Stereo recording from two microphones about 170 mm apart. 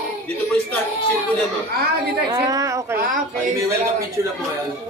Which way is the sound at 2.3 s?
20° right (ahead or behind).